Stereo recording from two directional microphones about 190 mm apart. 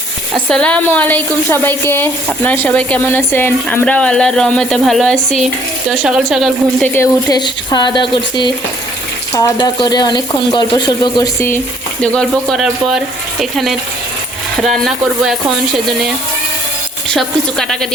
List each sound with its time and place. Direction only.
0.4 s speech: 5° left (ahead or behind)
6.9 s speech: 15° left (ahead or behind); by 16.1 s centre (ahead or behind)
17.2 s speech: centre (ahead or behind)